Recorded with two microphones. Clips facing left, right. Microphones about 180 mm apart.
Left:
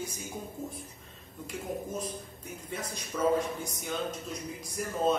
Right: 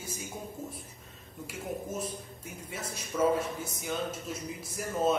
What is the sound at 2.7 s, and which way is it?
A man's voice, 5° right (ahead or behind).